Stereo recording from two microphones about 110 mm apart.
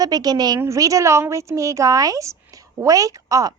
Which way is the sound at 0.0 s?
35° right (ahead or behind).